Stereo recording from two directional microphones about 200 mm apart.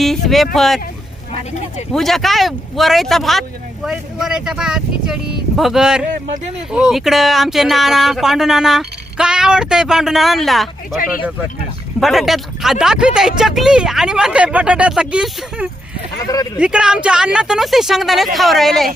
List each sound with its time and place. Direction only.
0.0 s speech: centre (ahead or behind)
1.9 s speech: centre (ahead or behind)
11.9 s speech: centre (ahead or behind)
16.1 s speech: 15° left (ahead or behind)
16.6 s speech: 5° right (ahead or behind)